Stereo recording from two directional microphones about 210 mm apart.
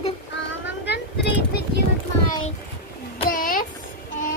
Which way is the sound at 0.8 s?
55° left (ahead or behind).